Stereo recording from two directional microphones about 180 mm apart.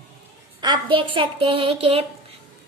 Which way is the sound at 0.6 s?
25° right (ahead or behind).